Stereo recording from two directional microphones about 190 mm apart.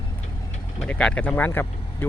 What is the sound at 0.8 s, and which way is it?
Speech, 5° left (ahead or behind).